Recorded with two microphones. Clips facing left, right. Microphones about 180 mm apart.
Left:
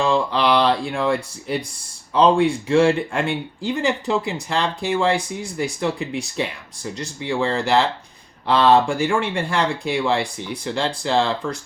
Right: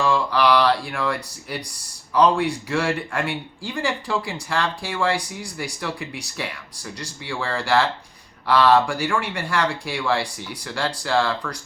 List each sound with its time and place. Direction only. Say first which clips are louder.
0.0 s speech: left 1 dB; 25° left (ahead or behind)